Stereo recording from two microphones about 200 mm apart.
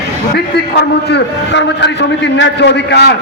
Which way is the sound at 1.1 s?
60° left (ahead or behind).